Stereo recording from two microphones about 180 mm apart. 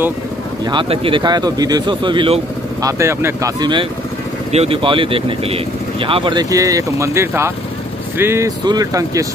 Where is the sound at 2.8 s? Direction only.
15° right (ahead or behind).